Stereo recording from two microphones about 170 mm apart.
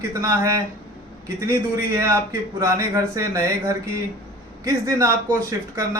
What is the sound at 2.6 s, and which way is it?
A man's voice, 15° right (ahead or behind).